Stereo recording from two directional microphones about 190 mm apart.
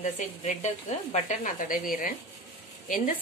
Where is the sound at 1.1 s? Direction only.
40° left (ahead or behind).